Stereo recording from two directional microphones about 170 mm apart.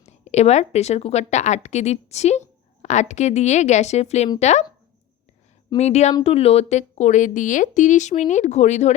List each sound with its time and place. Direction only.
0.0 s a woman's voice: 40° left (ahead or behind)
5.7 s a woman's voice: 40° left (ahead or behind)